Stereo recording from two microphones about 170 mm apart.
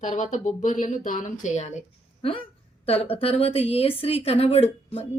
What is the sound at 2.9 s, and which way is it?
A woman's voice, 35° left (ahead or behind).